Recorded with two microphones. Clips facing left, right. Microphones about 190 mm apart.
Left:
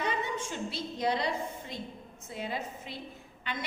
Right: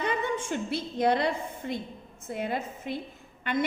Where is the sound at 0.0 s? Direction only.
55° right (ahead or behind).